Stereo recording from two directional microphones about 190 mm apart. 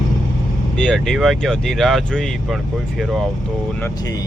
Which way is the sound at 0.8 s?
Centre (ahead or behind).